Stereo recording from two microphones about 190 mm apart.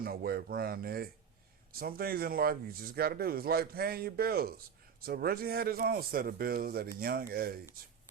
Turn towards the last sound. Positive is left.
turn(degrees=-55)  # may be behind; listen again after turning